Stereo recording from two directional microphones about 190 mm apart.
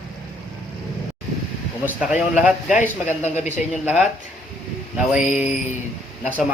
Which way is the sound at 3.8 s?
10° right (ahead or behind).